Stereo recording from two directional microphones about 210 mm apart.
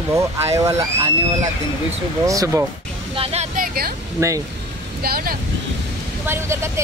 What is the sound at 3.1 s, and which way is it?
Vehicle, 30° right (ahead or behind).